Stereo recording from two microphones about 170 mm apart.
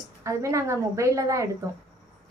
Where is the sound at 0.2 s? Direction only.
20° right (ahead or behind).